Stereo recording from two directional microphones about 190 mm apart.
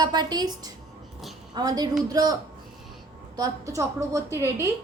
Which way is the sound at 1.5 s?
20° right (ahead or behind).